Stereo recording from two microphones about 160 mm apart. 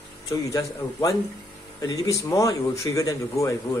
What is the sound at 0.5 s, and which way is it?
Speech, 20° left (ahead or behind).